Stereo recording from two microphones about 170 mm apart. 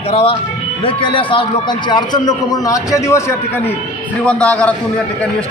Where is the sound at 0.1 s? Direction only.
35° left (ahead or behind); by 4.7 s 10° left (ahead or behind).